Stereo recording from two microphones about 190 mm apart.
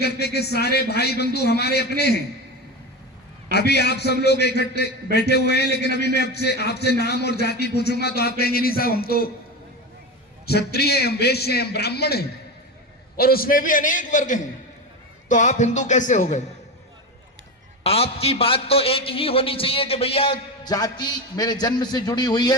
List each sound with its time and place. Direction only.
0.0 s speech: 60° left (ahead or behind)
3.5 s speech: 60° left (ahead or behind)
10.4 s a man's voice: 55° left (ahead or behind); by 16.4 s 40° left (ahead or behind)
17.8 s a man's voice: 30° left (ahead or behind)